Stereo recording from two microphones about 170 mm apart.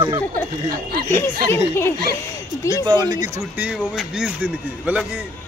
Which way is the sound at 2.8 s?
25° right (ahead or behind).